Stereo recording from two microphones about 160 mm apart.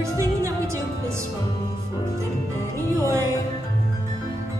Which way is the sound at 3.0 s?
20° right (ahead or behind).